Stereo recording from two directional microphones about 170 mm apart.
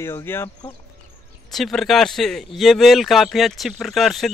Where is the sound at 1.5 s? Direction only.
Centre (ahead or behind).